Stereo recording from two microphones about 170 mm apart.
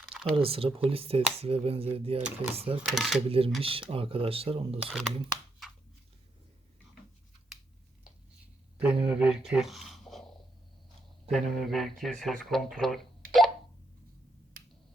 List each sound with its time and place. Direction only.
0.3 s speech: 35° right (ahead or behind)
2.8 s speech: centre (ahead or behind)
3.2 s speech: 35° right (ahead or behind)
4.9 s speech: centre (ahead or behind)
9.0 s speech: 5° right (ahead or behind)